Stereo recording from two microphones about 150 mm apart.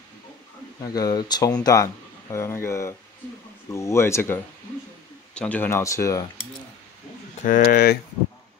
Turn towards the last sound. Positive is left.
turn(degrees=90)